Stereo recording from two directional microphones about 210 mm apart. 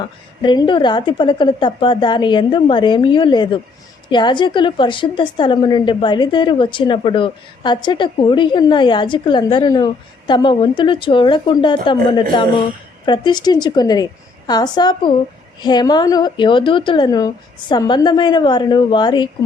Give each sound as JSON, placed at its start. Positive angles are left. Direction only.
{"t": 0.4, "sound": "a woman's voice", "side_deg": 20}